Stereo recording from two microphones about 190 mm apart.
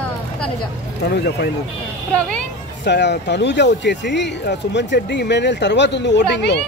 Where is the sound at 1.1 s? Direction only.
60° left (ahead or behind).